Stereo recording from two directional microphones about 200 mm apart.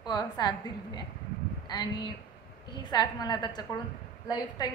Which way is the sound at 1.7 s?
20° left (ahead or behind).